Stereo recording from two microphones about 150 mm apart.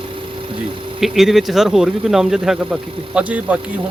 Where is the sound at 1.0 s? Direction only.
Centre (ahead or behind).